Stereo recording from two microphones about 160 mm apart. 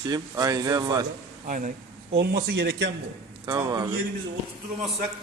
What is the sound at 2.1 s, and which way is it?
Speech, 90° right.